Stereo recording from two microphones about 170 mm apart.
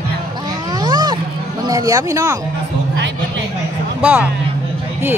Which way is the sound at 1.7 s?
20° right (ahead or behind).